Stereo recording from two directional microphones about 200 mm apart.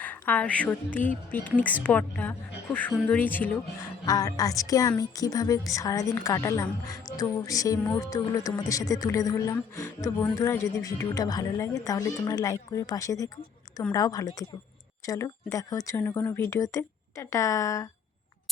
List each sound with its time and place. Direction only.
0.0 s a woman's voice: 10° left (ahead or behind)